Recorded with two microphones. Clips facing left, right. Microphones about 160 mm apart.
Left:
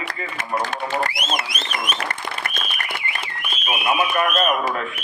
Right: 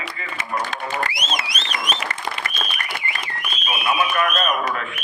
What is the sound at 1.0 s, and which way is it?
Speech, 50° left (ahead or behind).